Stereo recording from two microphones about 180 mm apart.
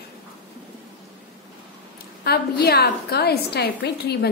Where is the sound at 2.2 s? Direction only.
60° left (ahead or behind).